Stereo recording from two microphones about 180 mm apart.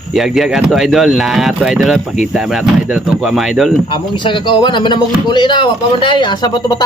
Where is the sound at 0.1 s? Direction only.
Centre (ahead or behind).